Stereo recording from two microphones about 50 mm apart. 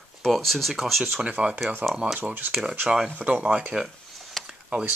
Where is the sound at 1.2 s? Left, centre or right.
Right.